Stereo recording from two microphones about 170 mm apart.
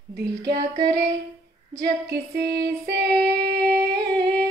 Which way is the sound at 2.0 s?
70° right (ahead or behind).